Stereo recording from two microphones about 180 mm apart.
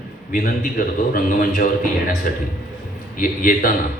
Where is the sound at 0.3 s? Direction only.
50° left (ahead or behind).